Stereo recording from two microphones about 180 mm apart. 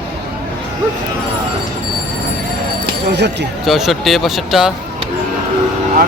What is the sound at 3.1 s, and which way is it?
Speech, 70° right (ahead or behind).